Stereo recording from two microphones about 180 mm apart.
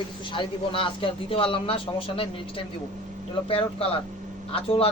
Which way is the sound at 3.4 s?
30° left (ahead or behind).